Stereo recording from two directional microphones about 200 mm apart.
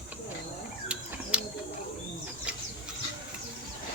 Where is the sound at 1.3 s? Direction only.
5° right (ahead or behind).